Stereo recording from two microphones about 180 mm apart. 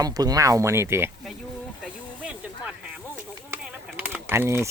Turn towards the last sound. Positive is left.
turn(degrees=-15)  # may be behind; listen again after turning